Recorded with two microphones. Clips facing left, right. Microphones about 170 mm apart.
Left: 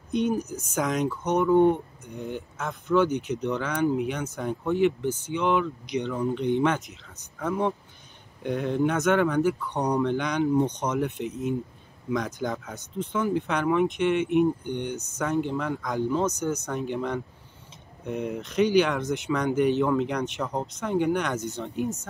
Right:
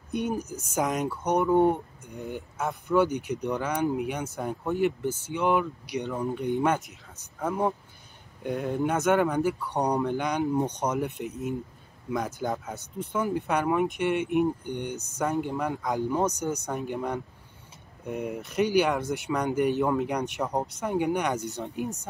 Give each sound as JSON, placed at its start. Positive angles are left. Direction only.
{"t": 0.1, "sound": "speech", "side_deg": -10}